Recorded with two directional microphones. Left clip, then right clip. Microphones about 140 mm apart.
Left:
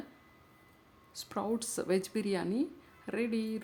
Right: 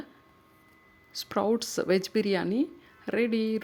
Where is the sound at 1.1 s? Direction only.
35° right (ahead or behind).